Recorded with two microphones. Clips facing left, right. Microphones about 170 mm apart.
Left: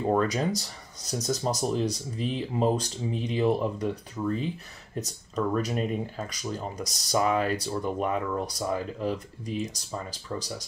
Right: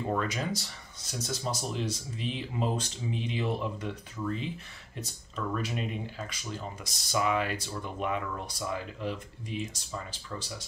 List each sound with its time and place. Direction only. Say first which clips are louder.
0.1 s speech: left 7 dB; 40° left (ahead or behind)